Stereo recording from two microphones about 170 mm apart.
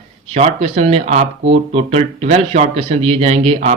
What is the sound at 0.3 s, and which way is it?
Speech, 35° right (ahead or behind).